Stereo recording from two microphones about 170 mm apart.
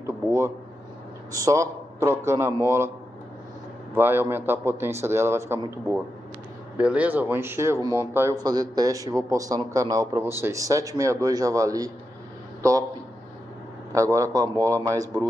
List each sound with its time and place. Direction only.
0.0 s a sound: 15° right (ahead or behind)
1.3 s a man's voice: 20° right (ahead or behind)
3.9 s a man's voice: 10° right (ahead or behind)
6.8 s a man's voice: 10° right (ahead or behind)
13.9 s a man's voice: 20° right (ahead or behind)